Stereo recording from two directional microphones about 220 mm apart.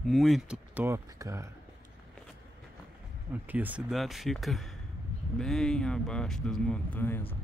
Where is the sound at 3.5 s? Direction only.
5° right (ahead or behind); by 7.2 s 10° left (ahead or behind).